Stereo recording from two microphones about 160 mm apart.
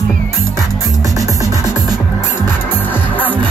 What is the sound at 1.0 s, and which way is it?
Music, 20° right (ahead or behind).